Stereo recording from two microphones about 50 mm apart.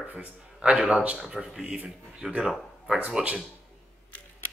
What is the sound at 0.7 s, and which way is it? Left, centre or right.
Speech, centre.